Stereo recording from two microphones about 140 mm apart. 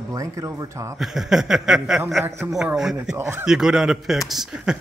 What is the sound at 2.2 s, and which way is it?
Speech, 15° right (ahead or behind).